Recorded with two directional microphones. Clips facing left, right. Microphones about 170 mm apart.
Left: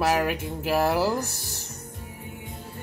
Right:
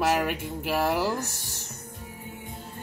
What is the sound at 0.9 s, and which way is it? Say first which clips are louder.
Speech: left 3 dB; 35° left (ahead or behind).